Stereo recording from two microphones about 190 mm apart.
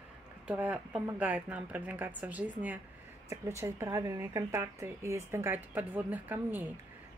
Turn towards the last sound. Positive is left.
turn(degrees=-10)  # may be behind; listen again after turning